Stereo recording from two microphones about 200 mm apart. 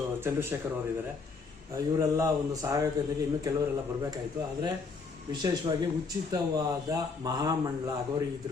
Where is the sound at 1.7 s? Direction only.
15° right (ahead or behind).